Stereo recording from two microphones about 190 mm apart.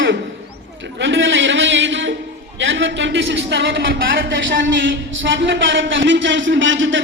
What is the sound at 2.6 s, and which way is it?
A man's voice, 75° right (ahead or behind).